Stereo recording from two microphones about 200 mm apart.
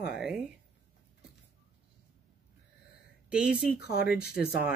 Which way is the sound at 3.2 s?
5° right (ahead or behind).